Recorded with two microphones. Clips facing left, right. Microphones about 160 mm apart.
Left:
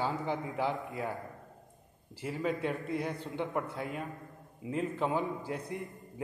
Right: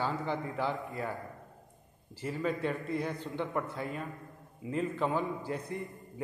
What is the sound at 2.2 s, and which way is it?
A man's voice, 5° left (ahead or behind).